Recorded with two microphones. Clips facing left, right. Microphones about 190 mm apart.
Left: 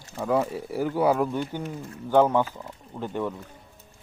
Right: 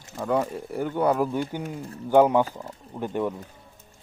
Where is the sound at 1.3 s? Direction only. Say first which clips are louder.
Right 1 dB; 10° right (ahead or behind).